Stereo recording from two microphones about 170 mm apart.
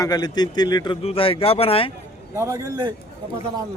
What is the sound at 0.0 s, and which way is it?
Speech, 25° left (ahead or behind).